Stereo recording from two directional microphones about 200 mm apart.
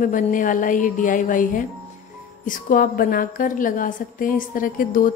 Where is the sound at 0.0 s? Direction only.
40° left (ahead or behind).